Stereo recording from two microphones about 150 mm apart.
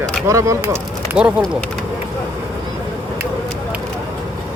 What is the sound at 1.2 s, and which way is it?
Speech, 5° right (ahead or behind).